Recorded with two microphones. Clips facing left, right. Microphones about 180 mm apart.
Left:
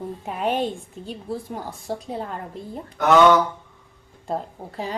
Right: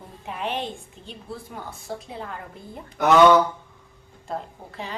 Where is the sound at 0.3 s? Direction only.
40° left (ahead or behind).